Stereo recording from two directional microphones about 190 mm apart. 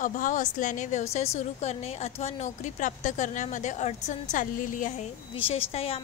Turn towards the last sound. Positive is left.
turn(degrees=30)  # may be behind; listen again after turning